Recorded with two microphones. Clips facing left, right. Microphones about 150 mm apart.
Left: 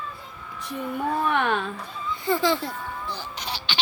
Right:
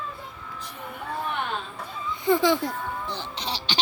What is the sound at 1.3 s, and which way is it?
Speech, 75° left (ahead or behind).